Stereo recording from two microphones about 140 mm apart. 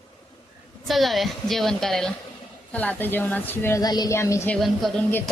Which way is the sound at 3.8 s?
30° left (ahead or behind).